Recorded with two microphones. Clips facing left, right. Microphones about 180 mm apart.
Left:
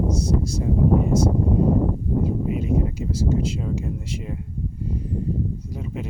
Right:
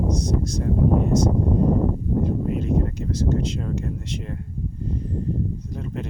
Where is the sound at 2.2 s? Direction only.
5° left (ahead or behind).